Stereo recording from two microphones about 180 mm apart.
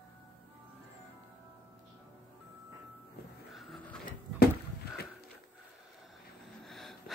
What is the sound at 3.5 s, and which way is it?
Vehicle, 5° left (ahead or behind).